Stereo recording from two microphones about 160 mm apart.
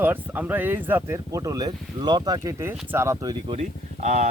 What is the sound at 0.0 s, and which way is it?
Speech, 10° right (ahead or behind).